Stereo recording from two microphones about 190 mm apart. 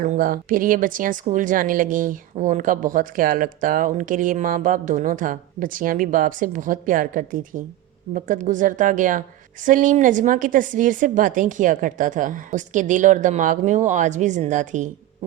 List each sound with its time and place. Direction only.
0.0 s speech: 45° right (ahead or behind)